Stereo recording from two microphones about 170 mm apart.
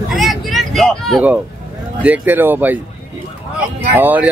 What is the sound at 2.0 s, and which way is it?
Speech, 10° right (ahead or behind).